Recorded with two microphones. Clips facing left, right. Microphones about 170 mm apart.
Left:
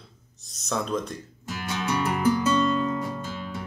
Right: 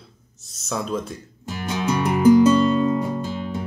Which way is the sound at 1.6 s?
15° right (ahead or behind).